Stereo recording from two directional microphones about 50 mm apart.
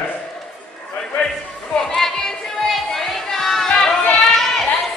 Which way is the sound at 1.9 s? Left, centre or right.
Centre.